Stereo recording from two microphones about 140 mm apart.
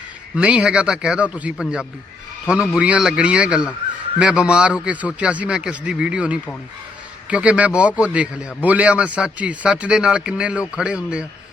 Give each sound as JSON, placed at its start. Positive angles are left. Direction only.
{"t": 0.3, "sound": "a man's voice", "side_deg": -5}